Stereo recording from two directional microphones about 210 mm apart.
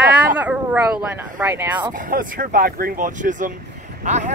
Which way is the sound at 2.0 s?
40° right (ahead or behind).